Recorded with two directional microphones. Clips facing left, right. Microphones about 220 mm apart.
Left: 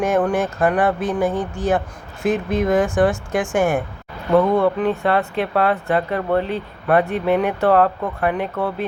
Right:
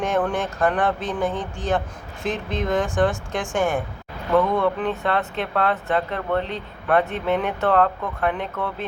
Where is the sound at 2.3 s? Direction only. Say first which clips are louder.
Left 7 dB; 50° left (ahead or behind).